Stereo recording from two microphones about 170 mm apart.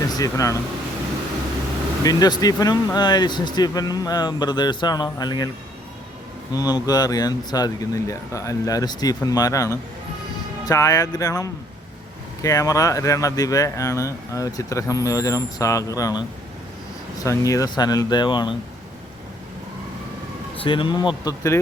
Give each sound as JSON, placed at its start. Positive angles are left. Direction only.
{"t": 0.0, "sound": "speech", "side_deg": 20}
{"t": 2.0, "sound": "speech", "side_deg": 20}
{"t": 6.5, "sound": "speech", "side_deg": 25}
{"t": 17.2, "sound": "speech", "side_deg": 20}
{"t": 20.7, "sound": "speech", "side_deg": 30}